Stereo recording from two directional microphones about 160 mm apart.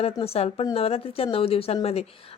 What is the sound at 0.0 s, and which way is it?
A woman's voice, 40° left (ahead or behind).